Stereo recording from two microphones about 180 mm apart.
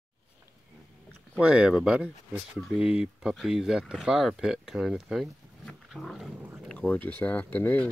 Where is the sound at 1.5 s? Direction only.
5° right (ahead or behind).